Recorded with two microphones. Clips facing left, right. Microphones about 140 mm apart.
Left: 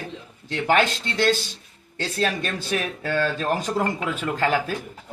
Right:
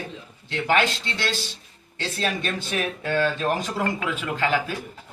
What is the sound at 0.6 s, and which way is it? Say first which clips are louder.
Speech: left 2 dB; 45° left (ahead or behind).